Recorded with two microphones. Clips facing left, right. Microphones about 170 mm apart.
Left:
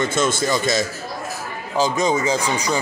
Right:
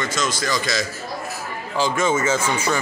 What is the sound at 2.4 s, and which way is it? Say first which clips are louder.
Speech: even; 15° left (ahead or behind).